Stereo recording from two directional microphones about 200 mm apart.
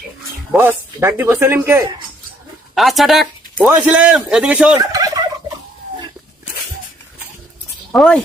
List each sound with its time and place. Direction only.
0.5 s speech: 10° right (ahead or behind)
2.7 s a man's voice: centre (ahead or behind)
4.8 s fowl: 20° right (ahead or behind)
7.9 s a man's voice: 5° left (ahead or behind)